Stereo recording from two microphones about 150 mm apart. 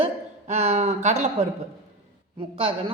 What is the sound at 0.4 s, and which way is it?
Speech, 50° right (ahead or behind).